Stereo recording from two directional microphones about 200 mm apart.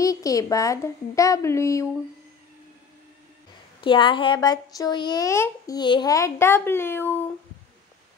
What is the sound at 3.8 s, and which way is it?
A woman's voice, 25° left (ahead or behind).